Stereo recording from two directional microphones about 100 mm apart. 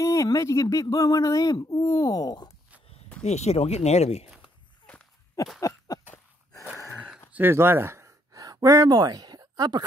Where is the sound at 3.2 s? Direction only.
90° left.